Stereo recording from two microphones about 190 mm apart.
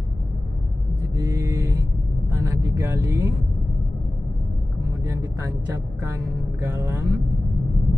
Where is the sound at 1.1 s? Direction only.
15° right (ahead or behind).